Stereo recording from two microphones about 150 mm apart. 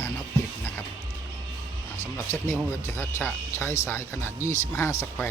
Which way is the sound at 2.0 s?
20° left (ahead or behind).